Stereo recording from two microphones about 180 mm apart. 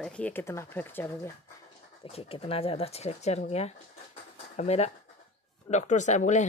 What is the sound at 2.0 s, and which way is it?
Speech, 30° left (ahead or behind).